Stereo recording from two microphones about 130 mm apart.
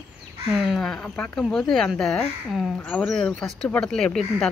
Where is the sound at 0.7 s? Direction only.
5° left (ahead or behind).